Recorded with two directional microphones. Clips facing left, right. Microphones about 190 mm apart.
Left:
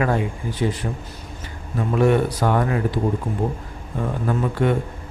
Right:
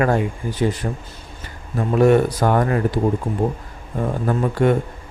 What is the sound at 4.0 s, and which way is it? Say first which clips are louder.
Speech: right 2 dB; 45° right (ahead or behind).